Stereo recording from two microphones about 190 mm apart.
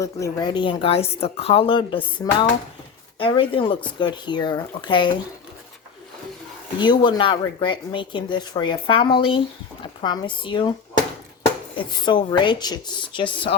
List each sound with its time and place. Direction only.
0.0 s speech: 20° left (ahead or behind)
6.7 s speech: 25° left (ahead or behind)
11.9 s speech: 25° left (ahead or behind)